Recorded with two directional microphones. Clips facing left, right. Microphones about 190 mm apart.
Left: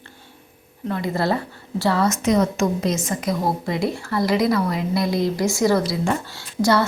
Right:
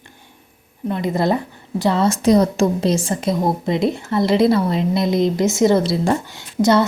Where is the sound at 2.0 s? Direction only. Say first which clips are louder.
Right 4 dB; 35° right (ahead or behind).